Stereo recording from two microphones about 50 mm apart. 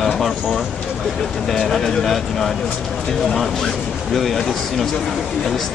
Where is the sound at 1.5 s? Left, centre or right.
Centre.